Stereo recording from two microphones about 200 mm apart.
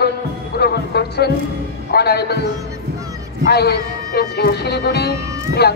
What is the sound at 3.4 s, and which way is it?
Speech, 55° left (ahead or behind).